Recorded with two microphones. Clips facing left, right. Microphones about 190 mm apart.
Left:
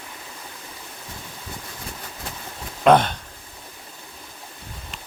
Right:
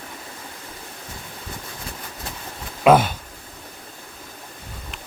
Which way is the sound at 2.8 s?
5° right (ahead or behind).